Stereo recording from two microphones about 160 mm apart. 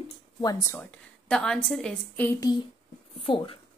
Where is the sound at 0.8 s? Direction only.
5° left (ahead or behind).